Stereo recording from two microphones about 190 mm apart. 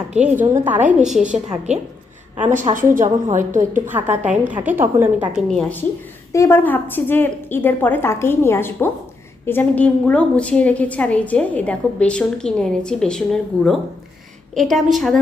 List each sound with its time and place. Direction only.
0.1 s a woman's voice: 10° right (ahead or behind)
1.7 s a woman's voice: 35° right (ahead or behind)
3.8 s a woman's voice: 10° right (ahead or behind)
5.5 s a woman's voice: 5° left (ahead or behind)
6.3 s a woman's voice: 15° left (ahead or behind)